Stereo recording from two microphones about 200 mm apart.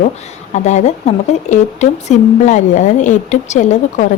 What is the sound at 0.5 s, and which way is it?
A woman's voice, 35° left (ahead or behind).